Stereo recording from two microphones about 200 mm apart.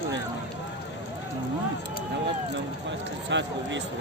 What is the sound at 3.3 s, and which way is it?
Speech, 65° right (ahead or behind).